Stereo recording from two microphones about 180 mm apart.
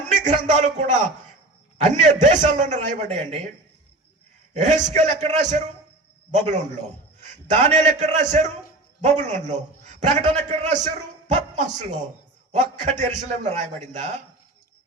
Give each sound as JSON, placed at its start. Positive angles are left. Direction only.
{"t": 0.1, "sound": "a man's voice", "side_deg": -40}
{"t": 4.5, "sound": "a man's voice", "side_deg": -40}